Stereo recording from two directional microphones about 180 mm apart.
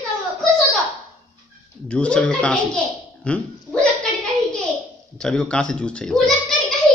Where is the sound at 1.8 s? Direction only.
5° left (ahead or behind).